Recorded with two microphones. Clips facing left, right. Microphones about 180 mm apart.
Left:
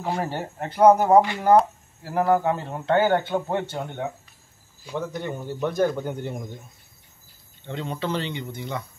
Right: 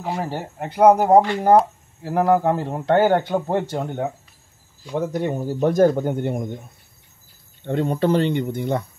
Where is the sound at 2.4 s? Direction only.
40° right (ahead or behind); by 6.5 s 60° right (ahead or behind).